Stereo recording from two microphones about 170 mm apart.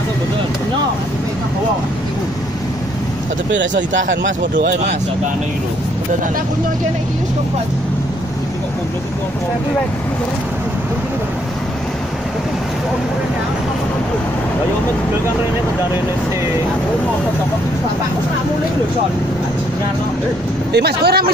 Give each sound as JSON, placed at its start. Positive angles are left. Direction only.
{"t": 3.9, "sound": "speech", "side_deg": -90}
{"t": 20.7, "sound": "speech", "side_deg": -70}